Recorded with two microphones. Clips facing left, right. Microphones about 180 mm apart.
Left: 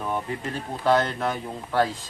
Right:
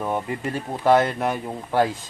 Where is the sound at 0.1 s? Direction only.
20° right (ahead or behind).